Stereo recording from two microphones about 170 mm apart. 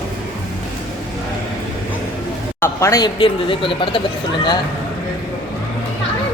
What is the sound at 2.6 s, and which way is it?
Speech, 20° left (ahead or behind).